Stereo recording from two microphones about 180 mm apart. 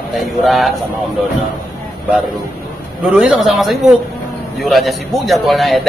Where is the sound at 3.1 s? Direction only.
Centre (ahead or behind).